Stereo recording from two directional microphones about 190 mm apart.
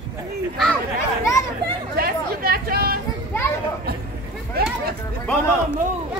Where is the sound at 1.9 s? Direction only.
55° right (ahead or behind).